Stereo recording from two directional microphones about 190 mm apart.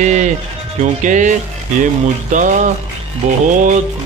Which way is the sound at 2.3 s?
40° right (ahead or behind).